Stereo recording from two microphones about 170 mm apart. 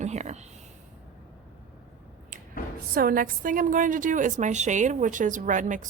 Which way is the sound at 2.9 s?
60° right (ahead or behind).